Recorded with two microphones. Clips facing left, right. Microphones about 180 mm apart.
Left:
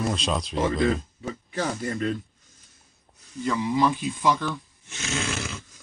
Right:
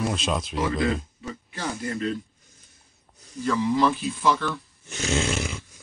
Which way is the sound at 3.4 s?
10° left (ahead or behind).